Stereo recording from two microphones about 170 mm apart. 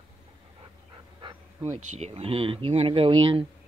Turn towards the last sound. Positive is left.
turn(degrees=-30)  # may be behind; listen again after turning